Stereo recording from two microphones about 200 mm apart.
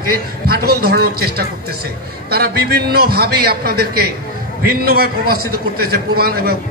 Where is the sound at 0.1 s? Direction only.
50° right (ahead or behind).